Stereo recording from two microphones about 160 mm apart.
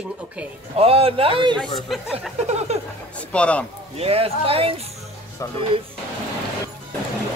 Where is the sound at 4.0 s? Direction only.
40° right (ahead or behind).